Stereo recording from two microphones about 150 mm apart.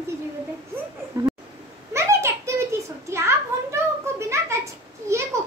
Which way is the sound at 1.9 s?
20° right (ahead or behind).